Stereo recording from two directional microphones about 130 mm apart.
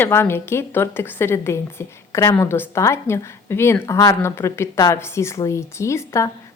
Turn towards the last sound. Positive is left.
turn(degrees=20)  # may be behind; listen again after turning